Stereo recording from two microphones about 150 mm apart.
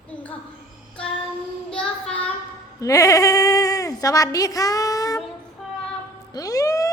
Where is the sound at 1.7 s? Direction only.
5° left (ahead or behind).